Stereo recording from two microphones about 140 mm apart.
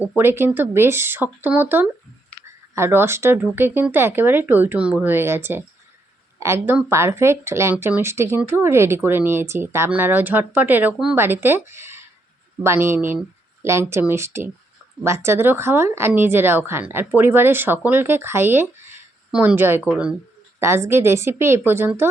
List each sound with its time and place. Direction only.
0.2 s speech: 15° right (ahead or behind)
20.6 s speech: 20° right (ahead or behind)